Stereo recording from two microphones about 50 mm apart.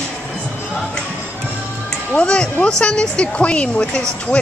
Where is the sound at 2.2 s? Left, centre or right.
Left.